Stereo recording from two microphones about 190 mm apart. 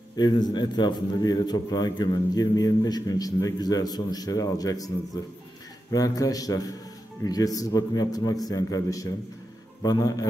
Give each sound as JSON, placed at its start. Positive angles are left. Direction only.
{"t": 0.1, "sound": "a man's voice", "side_deg": 20}